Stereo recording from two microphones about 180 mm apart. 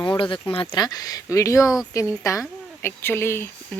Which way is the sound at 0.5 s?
30° left (ahead or behind).